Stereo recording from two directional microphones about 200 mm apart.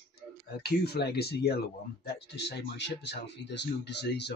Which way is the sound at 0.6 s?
55° left (ahead or behind).